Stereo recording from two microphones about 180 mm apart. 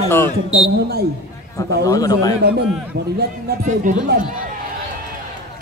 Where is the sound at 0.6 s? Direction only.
60° right (ahead or behind).